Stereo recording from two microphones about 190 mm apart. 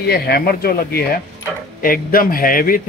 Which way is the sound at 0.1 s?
55° left (ahead or behind).